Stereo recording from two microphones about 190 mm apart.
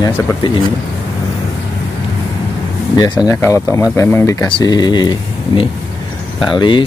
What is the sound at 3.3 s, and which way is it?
Speech, 15° left (ahead or behind).